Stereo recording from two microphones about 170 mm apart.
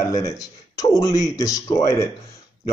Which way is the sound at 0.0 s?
20° left (ahead or behind).